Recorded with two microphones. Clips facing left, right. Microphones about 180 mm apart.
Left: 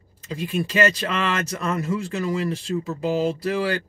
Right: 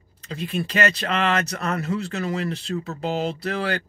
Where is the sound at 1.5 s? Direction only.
65° right (ahead or behind).